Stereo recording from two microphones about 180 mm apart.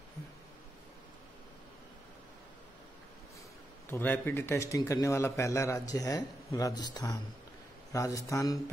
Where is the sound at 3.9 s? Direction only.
10° left (ahead or behind).